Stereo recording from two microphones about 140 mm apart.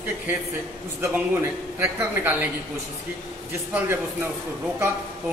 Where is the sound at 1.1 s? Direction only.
15° right (ahead or behind).